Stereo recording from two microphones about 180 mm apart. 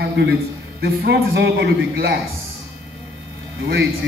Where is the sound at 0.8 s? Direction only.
65° right (ahead or behind).